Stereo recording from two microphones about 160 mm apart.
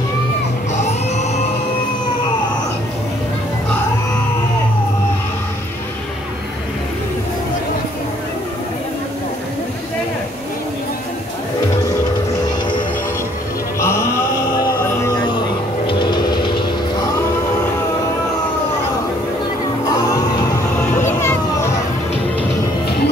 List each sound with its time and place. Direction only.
0.7 s music: 45° left (ahead or behind)
13.7 s music: 15° left (ahead or behind)
15.9 s vehicle: 30° left (ahead or behind)
21.0 s a sound: 15° left (ahead or behind)